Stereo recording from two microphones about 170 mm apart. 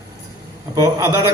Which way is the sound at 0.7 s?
20° right (ahead or behind).